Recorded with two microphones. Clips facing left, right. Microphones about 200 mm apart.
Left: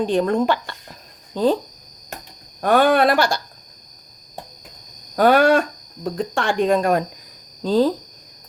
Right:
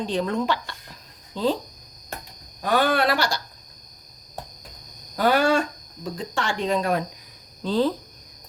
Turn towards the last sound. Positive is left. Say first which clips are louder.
# left 5 dB
turn(degrees=40)  # may be behind; listen again after turning